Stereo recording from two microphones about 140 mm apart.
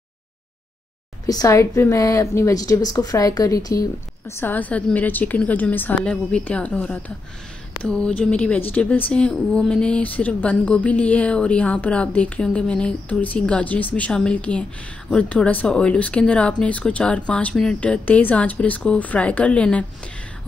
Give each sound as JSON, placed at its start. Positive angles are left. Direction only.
{"t": 1.2, "sound": "a woman's voice", "side_deg": 25}
{"t": 4.4, "sound": "a woman's voice", "side_deg": 10}